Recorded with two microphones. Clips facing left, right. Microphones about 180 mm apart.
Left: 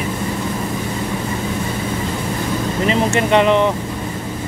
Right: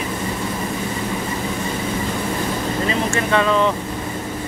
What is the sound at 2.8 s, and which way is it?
Speech, 20° left (ahead or behind).